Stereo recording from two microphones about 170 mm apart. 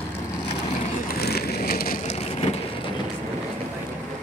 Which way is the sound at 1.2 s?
65° left (ahead or behind).